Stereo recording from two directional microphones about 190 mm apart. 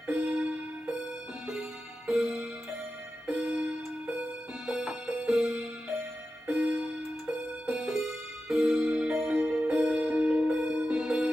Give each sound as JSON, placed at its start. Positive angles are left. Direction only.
{"t": 0.0, "sound": "music", "side_deg": -5}